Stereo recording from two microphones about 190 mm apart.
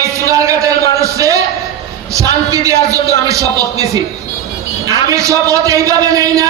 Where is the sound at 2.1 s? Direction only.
15° right (ahead or behind).